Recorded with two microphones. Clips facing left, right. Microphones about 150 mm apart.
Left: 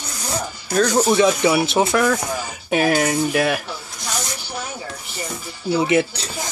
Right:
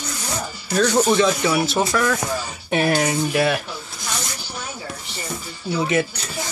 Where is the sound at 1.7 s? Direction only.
20° left (ahead or behind).